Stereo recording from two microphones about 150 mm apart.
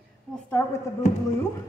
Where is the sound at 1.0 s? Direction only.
50° left (ahead or behind).